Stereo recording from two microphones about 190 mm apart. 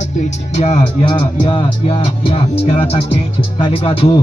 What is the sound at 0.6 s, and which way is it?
Music, 35° left (ahead or behind).